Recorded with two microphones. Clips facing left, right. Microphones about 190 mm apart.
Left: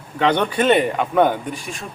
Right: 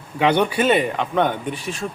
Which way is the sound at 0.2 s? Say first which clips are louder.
Even; 10° right (ahead or behind).